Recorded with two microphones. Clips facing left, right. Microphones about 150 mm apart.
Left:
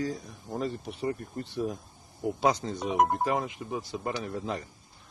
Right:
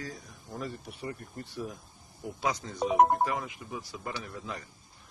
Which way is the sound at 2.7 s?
30° right (ahead or behind).